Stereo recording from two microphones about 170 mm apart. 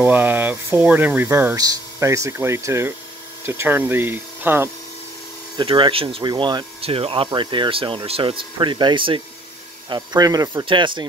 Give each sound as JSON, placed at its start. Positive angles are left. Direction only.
{"t": 0.0, "sound": "speech", "side_deg": -10}
{"t": 5.6, "sound": "speech", "side_deg": -30}